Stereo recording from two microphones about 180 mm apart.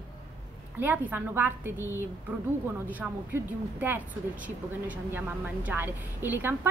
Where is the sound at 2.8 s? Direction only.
10° right (ahead or behind).